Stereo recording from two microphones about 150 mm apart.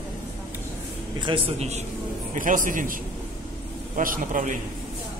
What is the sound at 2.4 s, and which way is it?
A man's voice, 60° right (ahead or behind).